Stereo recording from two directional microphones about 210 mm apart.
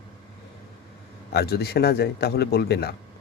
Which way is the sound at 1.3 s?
50° left (ahead or behind).